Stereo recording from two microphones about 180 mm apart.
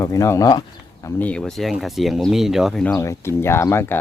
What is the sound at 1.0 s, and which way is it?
Speech, 5° left (ahead or behind).